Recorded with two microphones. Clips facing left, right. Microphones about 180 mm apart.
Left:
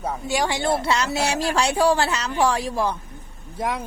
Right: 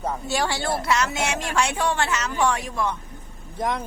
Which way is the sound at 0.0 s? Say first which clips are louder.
Left 1 dB; 10° left (ahead or behind).